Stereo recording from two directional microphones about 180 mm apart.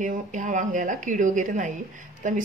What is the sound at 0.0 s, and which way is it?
A woman's voice, 45° right (ahead or behind).